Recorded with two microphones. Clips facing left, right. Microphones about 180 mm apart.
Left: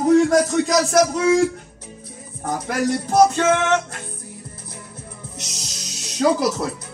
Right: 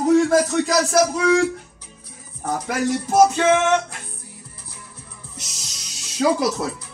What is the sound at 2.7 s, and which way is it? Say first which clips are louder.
A man's voice: left 1 dB; 5° right (ahead or behind).